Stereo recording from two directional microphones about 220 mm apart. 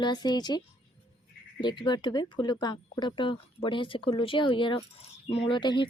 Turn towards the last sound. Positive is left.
turn(degrees=20)  # may be behind; listen again after turning